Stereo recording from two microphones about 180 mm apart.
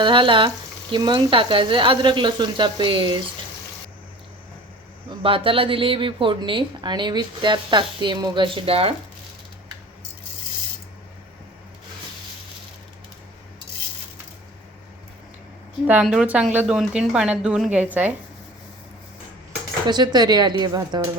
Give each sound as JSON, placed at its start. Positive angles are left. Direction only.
{"t": 0.0, "sound": "speech", "side_deg": -25}
{"t": 5.0, "sound": "speech", "side_deg": -30}
{"t": 15.9, "sound": "speech", "side_deg": -5}
{"t": 19.9, "sound": "speech", "side_deg": -25}